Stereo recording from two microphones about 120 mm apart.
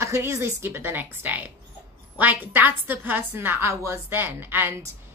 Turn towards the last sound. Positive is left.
turn(degrees=-15)  # may be behind; listen again after turning